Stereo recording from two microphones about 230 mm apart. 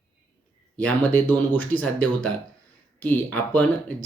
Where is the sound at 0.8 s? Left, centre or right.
Centre.